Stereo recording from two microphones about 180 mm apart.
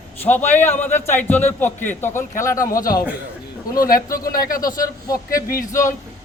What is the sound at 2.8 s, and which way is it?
Speech, 55° left (ahead or behind).